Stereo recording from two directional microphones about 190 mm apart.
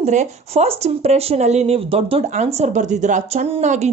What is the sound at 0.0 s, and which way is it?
Speech, 40° right (ahead or behind).